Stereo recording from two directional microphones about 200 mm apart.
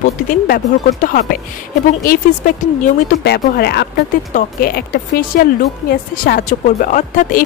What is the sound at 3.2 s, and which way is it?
A woman's voice, 55° left (ahead or behind).